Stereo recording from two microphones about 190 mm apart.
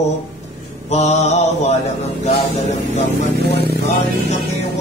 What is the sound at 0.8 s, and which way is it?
Speech, 35° left (ahead or behind).